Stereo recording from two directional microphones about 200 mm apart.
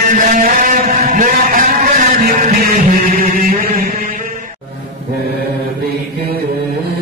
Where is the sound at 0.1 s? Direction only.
40° right (ahead or behind).